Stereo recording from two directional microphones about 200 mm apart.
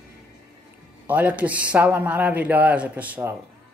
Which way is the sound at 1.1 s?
5° right (ahead or behind).